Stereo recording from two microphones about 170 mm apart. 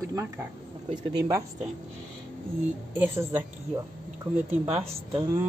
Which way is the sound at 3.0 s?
10° right (ahead or behind).